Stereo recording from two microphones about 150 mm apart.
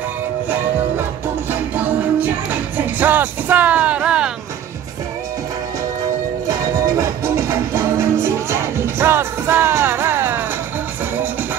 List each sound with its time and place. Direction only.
1.5 s music: 10° right (ahead or behind)
6.4 s music: 20° right (ahead or behind)